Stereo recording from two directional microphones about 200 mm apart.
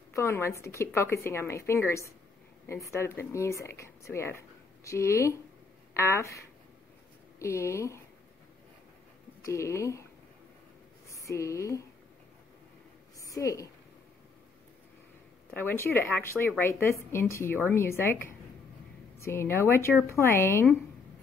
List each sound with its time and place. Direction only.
0.1 s a woman's voice: 15° left (ahead or behind)
9.4 s a woman's voice: 15° left (ahead or behind)
11.1 s speech: 15° left (ahead or behind)
13.2 s a woman's voice: 15° left (ahead or behind)
15.5 s a woman's voice: 10° left (ahead or behind)
19.1 s a woman's voice: 15° left (ahead or behind)